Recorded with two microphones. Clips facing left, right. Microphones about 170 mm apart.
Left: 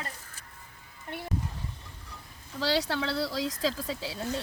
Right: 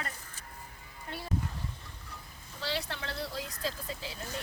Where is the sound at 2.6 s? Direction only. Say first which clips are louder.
Left 8 dB; 90° left.